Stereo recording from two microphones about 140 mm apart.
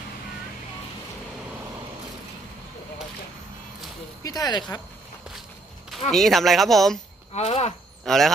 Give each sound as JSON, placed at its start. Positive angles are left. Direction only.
{"t": 4.2, "sound": "speech", "side_deg": 25}
{"t": 6.1, "sound": "speech", "side_deg": 0}
{"t": 7.3, "sound": "speech", "side_deg": 50}
{"t": 8.0, "sound": "speech", "side_deg": 0}